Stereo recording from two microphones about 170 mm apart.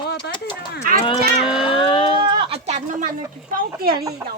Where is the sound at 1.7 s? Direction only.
30° left (ahead or behind).